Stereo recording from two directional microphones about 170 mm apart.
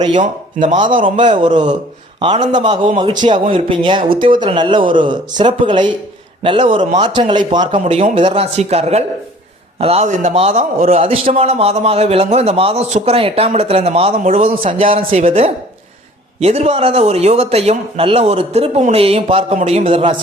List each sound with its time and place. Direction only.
0.2 s speech: 50° right (ahead or behind)
1.3 s a man's voice: 30° right (ahead or behind)